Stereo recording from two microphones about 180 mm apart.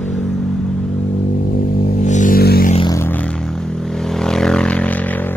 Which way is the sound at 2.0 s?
45° left (ahead or behind).